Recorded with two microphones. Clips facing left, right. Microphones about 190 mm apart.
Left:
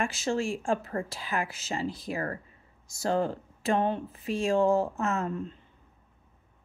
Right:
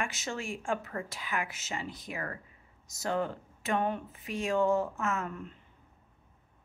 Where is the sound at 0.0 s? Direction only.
30° left (ahead or behind).